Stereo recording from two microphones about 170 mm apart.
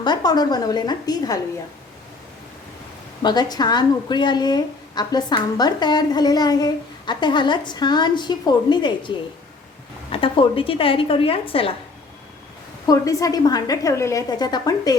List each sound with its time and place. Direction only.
0.0 s speech: 25° left (ahead or behind)
3.2 s a woman's voice: 25° left (ahead or behind)
12.9 s speech: 20° left (ahead or behind)